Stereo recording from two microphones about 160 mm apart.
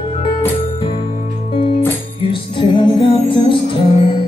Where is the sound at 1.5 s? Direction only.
35° left (ahead or behind).